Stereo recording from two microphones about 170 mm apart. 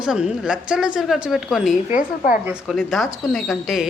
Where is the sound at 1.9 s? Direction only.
50° left (ahead or behind).